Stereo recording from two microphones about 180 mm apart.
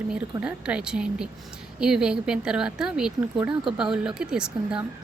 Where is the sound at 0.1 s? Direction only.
10° right (ahead or behind).